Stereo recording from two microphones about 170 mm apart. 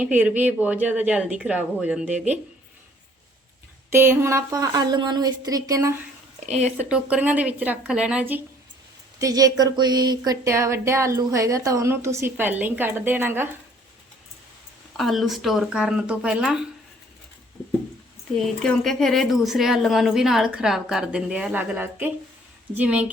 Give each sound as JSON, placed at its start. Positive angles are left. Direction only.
{"t": 0.0, "sound": "speech", "side_deg": -10}
{"t": 3.9, "sound": "speech", "side_deg": -15}
{"t": 6.4, "sound": "speech", "side_deg": -40}
{"t": 6.7, "sound": "speech", "side_deg": -10}
{"t": 9.1, "sound": "speech", "side_deg": -20}
{"t": 14.9, "sound": "a woman's voice", "side_deg": 0}
{"t": 18.3, "sound": "a woman's voice", "side_deg": 0}